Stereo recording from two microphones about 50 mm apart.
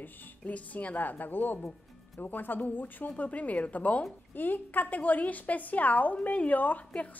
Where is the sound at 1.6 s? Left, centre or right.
Centre.